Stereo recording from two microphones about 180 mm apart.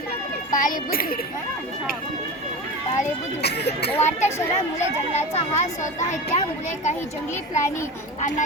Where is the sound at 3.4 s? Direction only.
65° left (ahead or behind).